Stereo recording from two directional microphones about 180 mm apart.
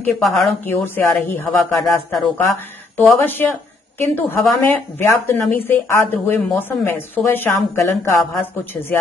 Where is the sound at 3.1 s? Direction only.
10° left (ahead or behind).